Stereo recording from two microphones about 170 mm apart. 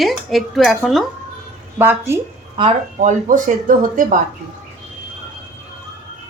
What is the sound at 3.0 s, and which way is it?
Speech, 50° right (ahead or behind).